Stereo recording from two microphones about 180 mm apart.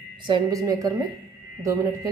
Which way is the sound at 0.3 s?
20° right (ahead or behind).